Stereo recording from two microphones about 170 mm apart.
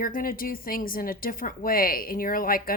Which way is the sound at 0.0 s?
55° left (ahead or behind).